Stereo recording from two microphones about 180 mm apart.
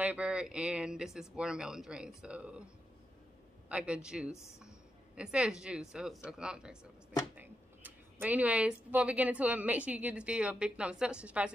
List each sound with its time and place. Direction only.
0.0 s speech: 5° right (ahead or behind)
3.6 s a woman's voice: 5° right (ahead or behind)